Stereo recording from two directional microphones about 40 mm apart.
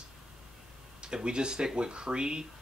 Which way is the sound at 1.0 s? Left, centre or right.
Right.